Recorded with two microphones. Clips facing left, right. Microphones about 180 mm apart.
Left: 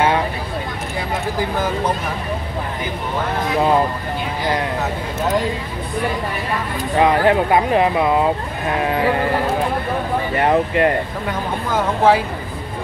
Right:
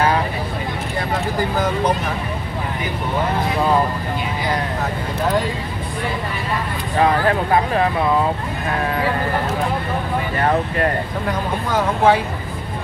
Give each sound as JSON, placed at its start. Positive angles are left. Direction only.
{"t": 7.0, "sound": "speech", "side_deg": 20}
{"t": 10.3, "sound": "speech", "side_deg": 20}
{"t": 11.2, "sound": "speech", "side_deg": 0}